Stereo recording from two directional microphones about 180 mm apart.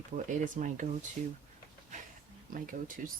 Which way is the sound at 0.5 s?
45° right (ahead or behind).